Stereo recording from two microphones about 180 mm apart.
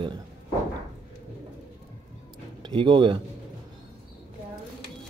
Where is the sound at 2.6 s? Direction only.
30° right (ahead or behind).